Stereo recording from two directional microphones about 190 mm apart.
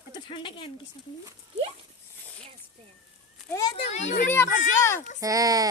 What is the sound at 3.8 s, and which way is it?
Speech, 40° left (ahead or behind).